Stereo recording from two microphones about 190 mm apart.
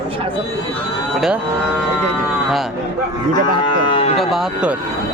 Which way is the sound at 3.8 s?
30° left (ahead or behind).